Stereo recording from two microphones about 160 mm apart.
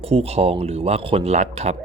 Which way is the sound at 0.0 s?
35° right (ahead or behind).